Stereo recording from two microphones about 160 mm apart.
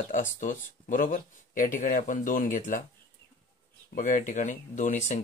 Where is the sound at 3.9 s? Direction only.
55° left (ahead or behind).